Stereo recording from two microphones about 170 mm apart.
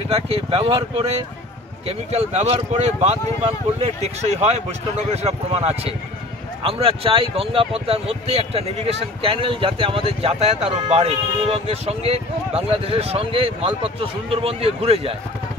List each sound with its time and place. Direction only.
0.1 s speech: 35° right (ahead or behind)